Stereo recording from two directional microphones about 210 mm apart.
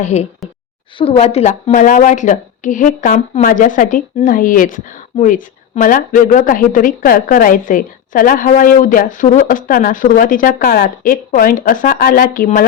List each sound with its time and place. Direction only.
0.0 s a woman's voice: 30° left (ahead or behind)